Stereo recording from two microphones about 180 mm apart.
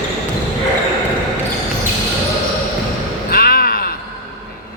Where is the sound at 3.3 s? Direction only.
55° left (ahead or behind).